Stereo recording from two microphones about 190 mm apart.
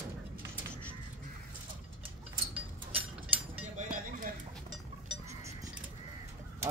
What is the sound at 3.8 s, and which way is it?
Cutlery, 45° right (ahead or behind).